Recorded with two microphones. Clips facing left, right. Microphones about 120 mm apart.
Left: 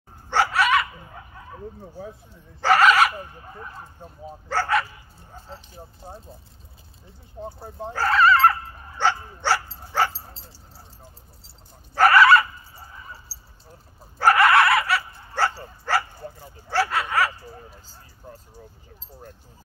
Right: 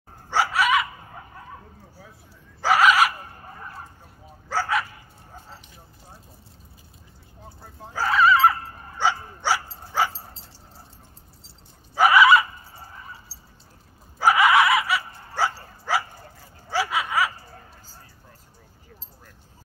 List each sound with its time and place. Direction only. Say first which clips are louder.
0.3 s dog: left 1 dB; 5° right (ahead or behind)
2.6 s a sound: left 1 dB; 5° right (ahead or behind)
4.5 s speech: left 2 dB; 5° right (ahead or behind)
6.0 s speech: left 9 dB; 30° left (ahead or behind)
7.4 s speech: left 12 dB; 30° left (ahead or behind)
7.9 s dog: left 1 dB; 10° right (ahead or behind)
11.9 s a sound: left 1 dB; 10° right (ahead or behind)
14.1 s dog: left 1 dB; 10° right (ahead or behind)
16.7 s a sound: left 2 dB; 5° right (ahead or behind)